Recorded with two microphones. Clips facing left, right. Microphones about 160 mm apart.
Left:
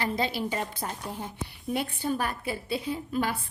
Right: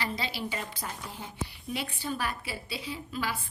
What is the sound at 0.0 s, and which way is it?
Speech, 50° left (ahead or behind).